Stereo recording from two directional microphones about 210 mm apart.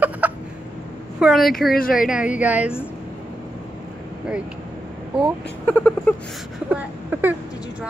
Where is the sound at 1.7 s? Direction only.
45° left (ahead or behind).